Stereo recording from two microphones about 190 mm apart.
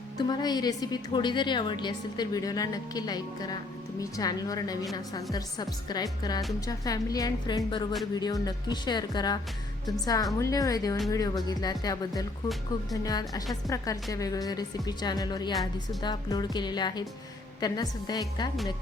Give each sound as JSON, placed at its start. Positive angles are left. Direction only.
{"t": 0.2, "sound": "a woman's voice", "side_deg": 20}